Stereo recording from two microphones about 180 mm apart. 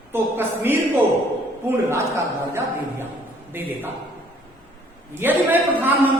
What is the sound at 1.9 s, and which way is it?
A man's voice, 15° right (ahead or behind).